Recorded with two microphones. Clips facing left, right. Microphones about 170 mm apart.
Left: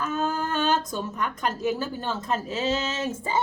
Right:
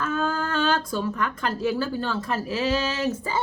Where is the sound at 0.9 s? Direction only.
20° left (ahead or behind).